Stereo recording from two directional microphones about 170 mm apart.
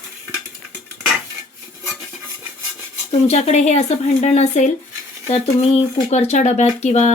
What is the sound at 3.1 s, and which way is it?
Speech, 40° left (ahead or behind).